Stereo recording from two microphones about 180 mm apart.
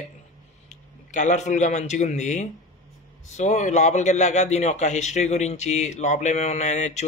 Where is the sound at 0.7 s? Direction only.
40° left (ahead or behind).